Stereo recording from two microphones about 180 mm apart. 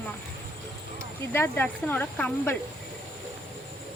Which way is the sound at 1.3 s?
10° left (ahead or behind).